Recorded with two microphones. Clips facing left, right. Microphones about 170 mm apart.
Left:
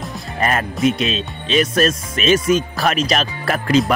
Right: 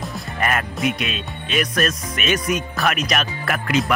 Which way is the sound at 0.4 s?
30° left (ahead or behind).